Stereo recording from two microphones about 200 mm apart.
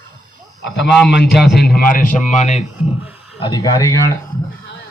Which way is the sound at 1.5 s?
45° left (ahead or behind).